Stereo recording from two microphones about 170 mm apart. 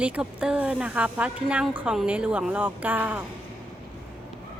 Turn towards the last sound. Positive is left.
turn(degrees=-10)  # may be behind; listen again after turning